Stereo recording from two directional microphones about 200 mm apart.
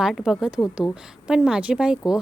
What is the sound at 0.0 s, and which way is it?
A woman's voice, centre (ahead or behind).